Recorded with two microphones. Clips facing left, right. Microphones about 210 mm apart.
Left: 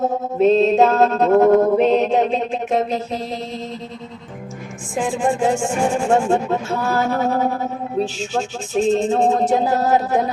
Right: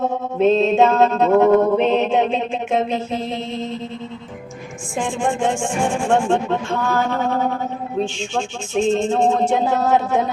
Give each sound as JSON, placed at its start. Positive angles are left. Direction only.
{"t": 0.3, "sound": "mantra", "side_deg": 0}
{"t": 4.9, "sound": "mantra", "side_deg": 5}
{"t": 5.6, "sound": "music", "side_deg": 5}
{"t": 8.2, "sound": "mantra", "side_deg": 5}